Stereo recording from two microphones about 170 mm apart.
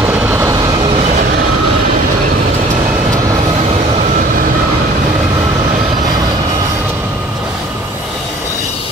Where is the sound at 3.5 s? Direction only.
35° right (ahead or behind); by 4.4 s 50° right (ahead or behind).